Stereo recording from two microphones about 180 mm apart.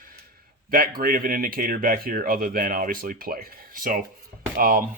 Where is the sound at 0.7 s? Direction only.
55° right (ahead or behind).